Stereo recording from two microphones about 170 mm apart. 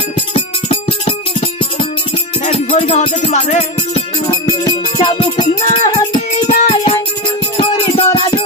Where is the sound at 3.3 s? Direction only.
40° left (ahead or behind).